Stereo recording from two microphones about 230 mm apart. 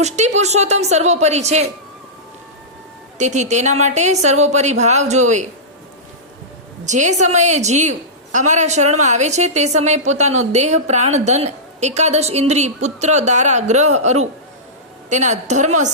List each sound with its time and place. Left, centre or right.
0.0 s a woman's voice: right
3.2 s a woman's voice: right
6.8 s a woman's voice: right